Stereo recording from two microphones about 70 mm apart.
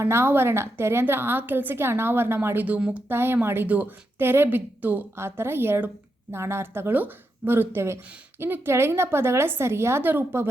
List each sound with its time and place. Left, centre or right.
0.0 s a woman's voice: right
2.6 s speech: centre
3.1 s speech: right
5.1 s a woman's voice: right